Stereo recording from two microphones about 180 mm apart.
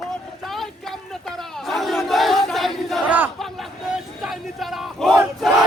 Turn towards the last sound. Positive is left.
turn(degrees=0)  # may be behind; listen again after turning